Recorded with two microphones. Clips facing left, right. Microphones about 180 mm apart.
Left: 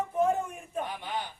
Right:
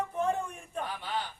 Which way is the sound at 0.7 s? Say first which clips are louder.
Left 1 dB; 15° left (ahead or behind).